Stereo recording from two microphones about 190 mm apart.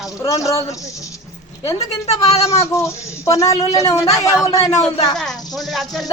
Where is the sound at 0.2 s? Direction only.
15° left (ahead or behind).